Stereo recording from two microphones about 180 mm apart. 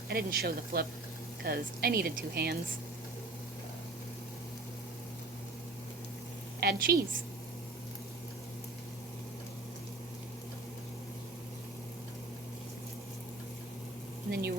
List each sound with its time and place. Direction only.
0.1 s speech: 60° right (ahead or behind)
6.6 s speech: 55° right (ahead or behind)
14.3 s speech: 60° right (ahead or behind)